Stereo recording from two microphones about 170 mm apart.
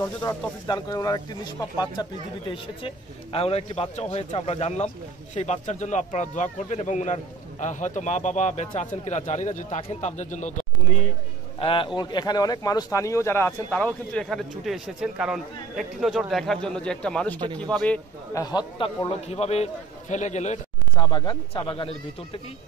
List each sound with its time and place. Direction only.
0.0 s speech: 15° left (ahead or behind); by 11.1 s 45° left (ahead or behind)
11.6 s speech: 30° left (ahead or behind); by 18.0 s 5° left (ahead or behind)
18.3 s speech: 25° left (ahead or behind)
19.2 s a man's voice: 40° left (ahead or behind)
21.0 s speech: 25° left (ahead or behind)